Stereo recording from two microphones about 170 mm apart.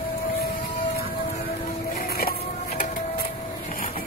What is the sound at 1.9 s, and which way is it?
Music, 60° left (ahead or behind).